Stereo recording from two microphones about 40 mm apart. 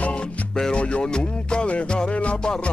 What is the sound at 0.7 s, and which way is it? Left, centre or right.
Music, left.